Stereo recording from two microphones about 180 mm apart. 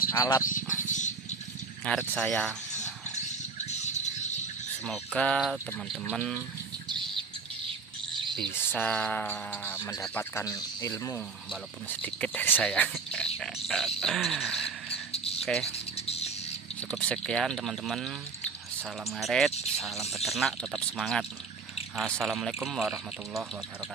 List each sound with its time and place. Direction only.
0.1 s speech: 15° left (ahead or behind)
0.4 s a sound: 45° left (ahead or behind)
1.9 s speech: 5° left (ahead or behind)
3.3 s a sound: 40° left (ahead or behind)
4.8 s speech: 5° left (ahead or behind)
6.9 s bird: 25° right (ahead or behind)
8.4 s speech: 10° left (ahead or behind)
11.9 s speech: 10° left (ahead or behind)
12.9 s a sound: 5° left (ahead or behind)
13.7 s cricket: centre (ahead or behind)
15.1 s cricket: 35° left (ahead or behind)
16.8 s speech: 5° left (ahead or behind)